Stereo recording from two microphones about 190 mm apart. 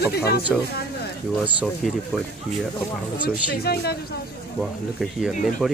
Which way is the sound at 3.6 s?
55° left (ahead or behind).